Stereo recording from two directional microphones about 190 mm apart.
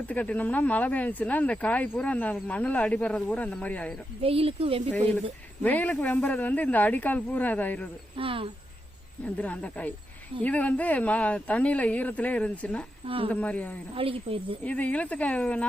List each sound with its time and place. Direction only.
0.1 s speech: 10° left (ahead or behind)
4.2 s speech: 30° right (ahead or behind)
4.9 s speech: 10° left (ahead or behind)
8.1 s a woman's voice: 30° right (ahead or behind)
9.2 s speech: 5° left (ahead or behind)
13.9 s a woman's voice: 30° right (ahead or behind)
14.6 s speech: 5° left (ahead or behind)